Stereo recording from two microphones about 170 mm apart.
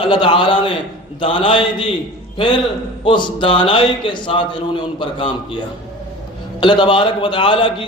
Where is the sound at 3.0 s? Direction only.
25° left (ahead or behind).